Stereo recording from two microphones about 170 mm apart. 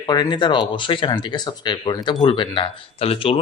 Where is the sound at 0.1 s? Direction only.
25° left (ahead or behind).